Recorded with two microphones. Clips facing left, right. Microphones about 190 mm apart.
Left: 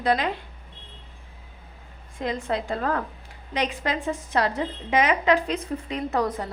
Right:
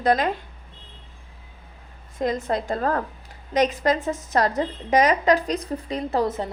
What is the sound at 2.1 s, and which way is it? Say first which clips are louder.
A woman's voice: right 3 dB; 40° right (ahead or behind).